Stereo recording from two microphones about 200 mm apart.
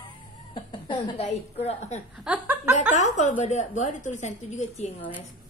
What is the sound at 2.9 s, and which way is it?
A woman's voice, 35° left (ahead or behind).